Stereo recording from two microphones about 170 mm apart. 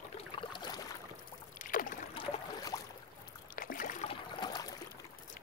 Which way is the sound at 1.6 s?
55° left (ahead or behind).